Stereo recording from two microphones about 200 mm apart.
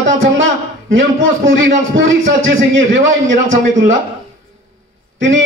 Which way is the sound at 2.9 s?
40° right (ahead or behind).